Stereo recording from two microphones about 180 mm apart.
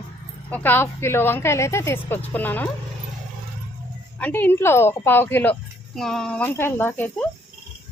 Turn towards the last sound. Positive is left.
turn(degrees=10)  # may be behind; listen again after turning